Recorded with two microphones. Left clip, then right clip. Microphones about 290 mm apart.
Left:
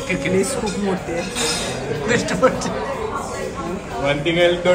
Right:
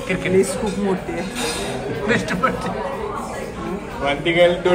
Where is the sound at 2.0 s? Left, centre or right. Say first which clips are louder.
Left 3 dB; centre.